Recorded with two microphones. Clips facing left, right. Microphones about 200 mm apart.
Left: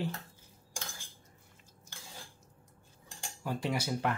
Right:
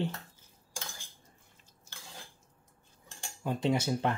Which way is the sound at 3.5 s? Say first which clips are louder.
Right 4 dB; 25° right (ahead or behind).